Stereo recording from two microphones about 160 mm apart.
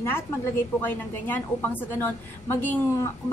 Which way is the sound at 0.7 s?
15° left (ahead or behind).